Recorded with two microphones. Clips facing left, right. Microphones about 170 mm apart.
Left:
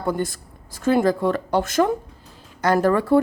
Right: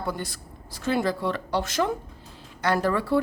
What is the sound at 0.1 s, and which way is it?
A woman's voice, 50° left (ahead or behind).